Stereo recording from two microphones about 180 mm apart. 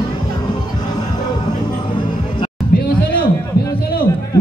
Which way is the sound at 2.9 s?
55° left (ahead or behind).